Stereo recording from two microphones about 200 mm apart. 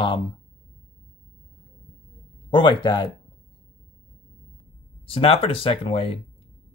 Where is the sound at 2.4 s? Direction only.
25° left (ahead or behind).